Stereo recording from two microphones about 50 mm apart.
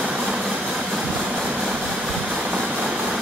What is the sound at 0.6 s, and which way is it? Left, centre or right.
Vehicle, centre.